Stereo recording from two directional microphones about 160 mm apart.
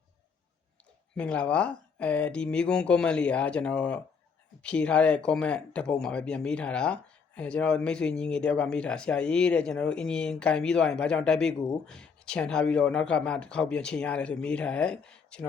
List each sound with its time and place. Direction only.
1.1 s speech: 5° left (ahead or behind)